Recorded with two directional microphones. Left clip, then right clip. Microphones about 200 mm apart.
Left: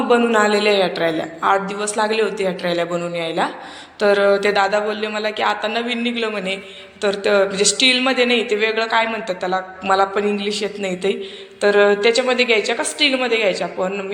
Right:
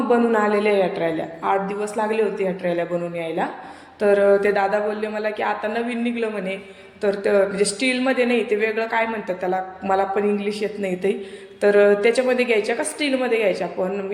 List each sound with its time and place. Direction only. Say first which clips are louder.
0.1 s speech: left 3 dB; 10° right (ahead or behind)